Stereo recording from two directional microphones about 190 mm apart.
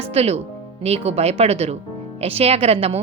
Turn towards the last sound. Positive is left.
turn(degrees=-30)  # may be behind; listen again after turning